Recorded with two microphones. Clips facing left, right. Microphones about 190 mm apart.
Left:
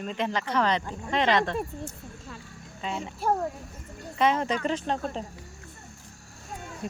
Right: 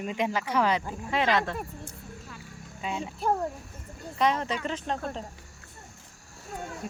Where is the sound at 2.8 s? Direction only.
Centre (ahead or behind).